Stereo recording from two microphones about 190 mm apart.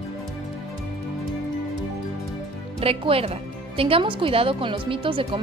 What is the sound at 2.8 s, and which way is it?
Speech, 30° right (ahead or behind).